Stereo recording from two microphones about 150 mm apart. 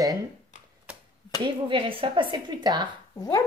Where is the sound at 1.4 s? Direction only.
35° right (ahead or behind).